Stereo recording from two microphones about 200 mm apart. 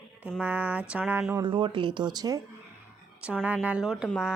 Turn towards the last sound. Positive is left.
turn(degrees=-5)  # may be behind; listen again after turning